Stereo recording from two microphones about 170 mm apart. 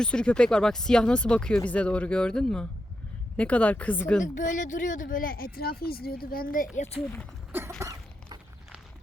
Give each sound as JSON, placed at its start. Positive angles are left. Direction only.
{"t": 0.0, "sound": "speech", "side_deg": 5}
{"t": 4.2, "sound": "speech", "side_deg": 45}
{"t": 7.8, "sound": "a sound", "side_deg": -20}